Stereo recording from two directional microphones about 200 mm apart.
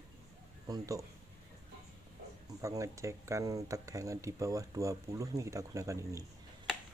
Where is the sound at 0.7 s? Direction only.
15° right (ahead or behind).